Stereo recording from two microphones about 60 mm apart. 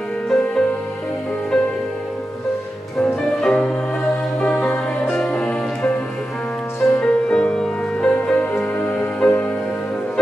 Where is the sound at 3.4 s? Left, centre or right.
Centre.